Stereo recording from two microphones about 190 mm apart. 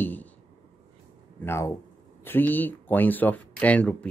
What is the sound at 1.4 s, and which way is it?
Speech, 15° left (ahead or behind).